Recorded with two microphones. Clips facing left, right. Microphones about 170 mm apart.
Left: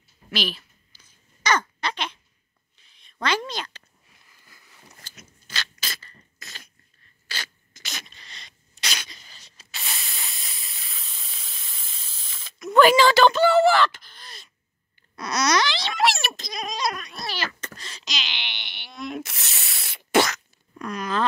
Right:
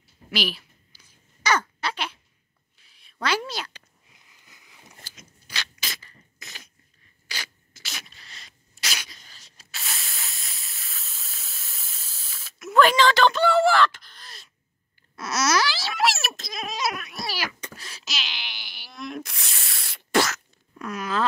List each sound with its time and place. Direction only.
0.3 s a sound: 10° right (ahead or behind)
7.2 s sneeze: 10° right (ahead or behind)
15.1 s babbling: 5° right (ahead or behind)